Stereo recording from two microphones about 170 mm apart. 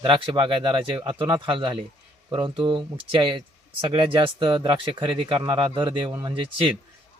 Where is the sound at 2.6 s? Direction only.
30° right (ahead or behind).